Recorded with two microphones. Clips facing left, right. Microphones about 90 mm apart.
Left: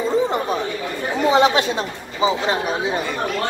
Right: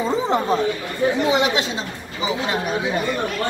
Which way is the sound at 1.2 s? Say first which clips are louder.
Left 4 dB; 40° left (ahead or behind).